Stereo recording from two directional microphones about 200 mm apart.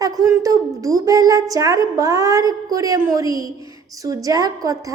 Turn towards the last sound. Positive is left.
turn(degrees=-15)  # may be behind; listen again after turning